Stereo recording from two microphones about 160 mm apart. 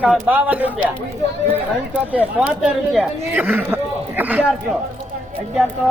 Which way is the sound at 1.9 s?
10° right (ahead or behind).